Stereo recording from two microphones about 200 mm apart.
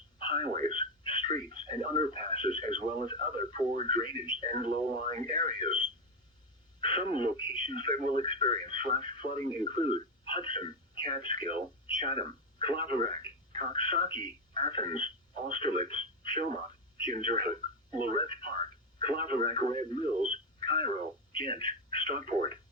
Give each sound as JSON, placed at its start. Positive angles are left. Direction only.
{"t": 0.2, "sound": "telephone", "side_deg": 25}
{"t": 0.7, "sound": "a sound", "side_deg": 25}
{"t": 1.7, "sound": "speech", "side_deg": 25}
{"t": 13.0, "sound": "speech", "side_deg": -40}
{"t": 13.5, "sound": "a sound", "side_deg": -40}
{"t": 13.7, "sound": "speech", "side_deg": 25}
{"t": 15.9, "sound": "telephone", "side_deg": 25}
{"t": 17.3, "sound": "speech", "side_deg": 25}